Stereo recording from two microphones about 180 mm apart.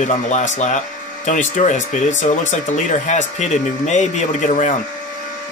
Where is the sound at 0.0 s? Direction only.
40° left (ahead or behind).